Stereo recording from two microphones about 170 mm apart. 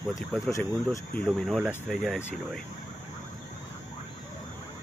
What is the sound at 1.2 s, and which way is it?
Speech, 5° left (ahead or behind).